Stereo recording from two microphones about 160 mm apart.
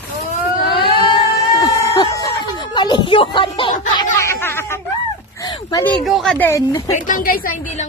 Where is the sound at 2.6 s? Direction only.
30° left (ahead or behind).